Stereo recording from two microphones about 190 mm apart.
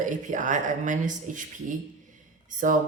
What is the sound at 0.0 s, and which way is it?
Speech, 40° right (ahead or behind).